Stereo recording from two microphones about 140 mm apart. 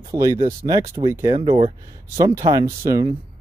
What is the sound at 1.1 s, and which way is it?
Speech, 20° right (ahead or behind).